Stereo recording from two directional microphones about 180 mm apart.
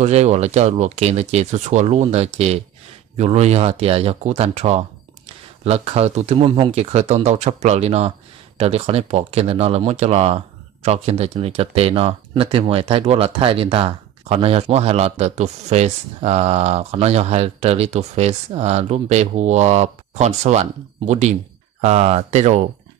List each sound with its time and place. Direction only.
0.0 s speech: 40° right (ahead or behind)